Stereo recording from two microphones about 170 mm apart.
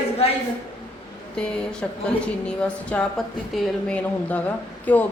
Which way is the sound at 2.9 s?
10° left (ahead or behind).